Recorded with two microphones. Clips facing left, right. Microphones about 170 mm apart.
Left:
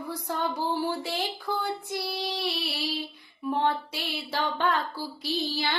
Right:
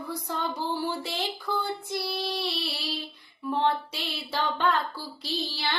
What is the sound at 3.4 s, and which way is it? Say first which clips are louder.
Music: even; 15° left (ahead or behind).